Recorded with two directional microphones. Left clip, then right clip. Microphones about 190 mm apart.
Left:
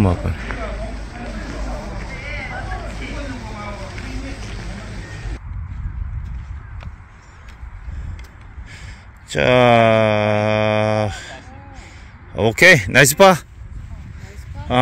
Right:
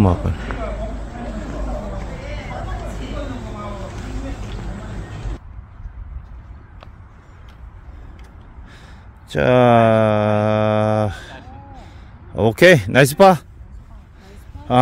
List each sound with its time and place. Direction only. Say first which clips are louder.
0.0 s speech: right 2 dB; 10° right (ahead or behind)
8.6 s mantra: left 6 dB; 20° right (ahead or behind)
12.4 s speech: left 1 dB; 20° right (ahead or behind)